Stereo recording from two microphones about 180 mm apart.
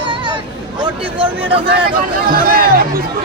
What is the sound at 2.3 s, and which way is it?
Music, 55° right (ahead or behind).